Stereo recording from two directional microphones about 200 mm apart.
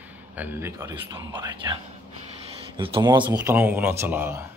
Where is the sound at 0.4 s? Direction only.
10° right (ahead or behind).